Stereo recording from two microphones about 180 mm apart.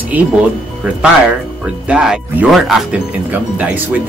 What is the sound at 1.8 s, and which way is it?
Speech, 5° right (ahead or behind).